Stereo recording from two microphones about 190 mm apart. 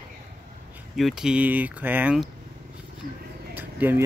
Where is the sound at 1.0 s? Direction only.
Centre (ahead or behind).